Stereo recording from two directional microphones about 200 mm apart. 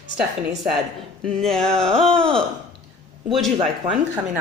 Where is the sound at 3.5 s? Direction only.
25° right (ahead or behind).